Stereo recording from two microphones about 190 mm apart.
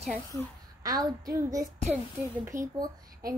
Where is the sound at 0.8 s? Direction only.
20° right (ahead or behind).